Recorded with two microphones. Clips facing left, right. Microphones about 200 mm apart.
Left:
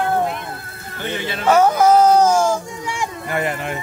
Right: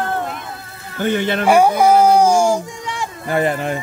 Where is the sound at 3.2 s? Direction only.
35° right (ahead or behind).